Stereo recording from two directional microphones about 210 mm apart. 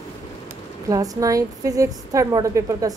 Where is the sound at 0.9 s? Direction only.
15° right (ahead or behind).